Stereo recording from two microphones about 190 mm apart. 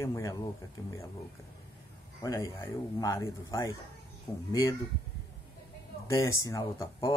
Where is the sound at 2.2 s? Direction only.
15° left (ahead or behind).